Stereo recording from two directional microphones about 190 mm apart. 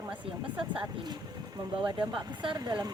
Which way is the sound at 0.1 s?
5° right (ahead or behind).